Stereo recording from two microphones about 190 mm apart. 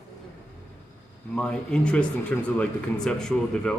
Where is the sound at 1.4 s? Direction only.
5° left (ahead or behind).